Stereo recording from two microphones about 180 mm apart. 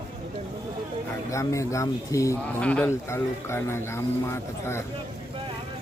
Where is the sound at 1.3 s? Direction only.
15° left (ahead or behind).